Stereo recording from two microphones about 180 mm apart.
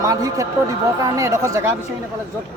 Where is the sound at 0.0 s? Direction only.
20° right (ahead or behind).